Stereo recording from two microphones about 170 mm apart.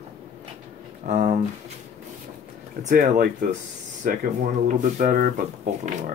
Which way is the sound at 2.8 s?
45° right (ahead or behind).